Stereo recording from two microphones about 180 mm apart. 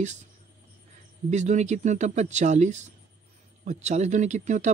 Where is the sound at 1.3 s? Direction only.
40° right (ahead or behind).